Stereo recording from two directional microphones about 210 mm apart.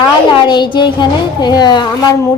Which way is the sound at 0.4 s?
20° left (ahead or behind).